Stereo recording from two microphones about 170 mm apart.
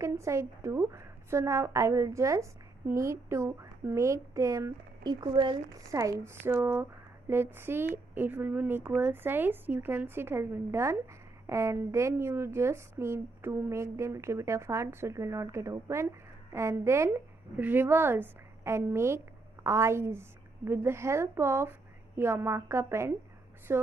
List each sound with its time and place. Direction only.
0.0 s speech: 15° right (ahead or behind)